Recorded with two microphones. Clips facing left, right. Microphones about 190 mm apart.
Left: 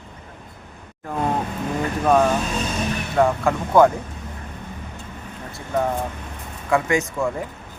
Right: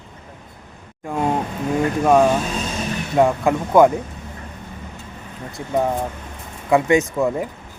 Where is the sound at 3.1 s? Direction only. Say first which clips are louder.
Right 3 dB; 15° right (ahead or behind).